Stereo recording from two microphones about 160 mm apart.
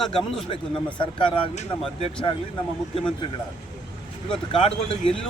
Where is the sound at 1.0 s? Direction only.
30° left (ahead or behind).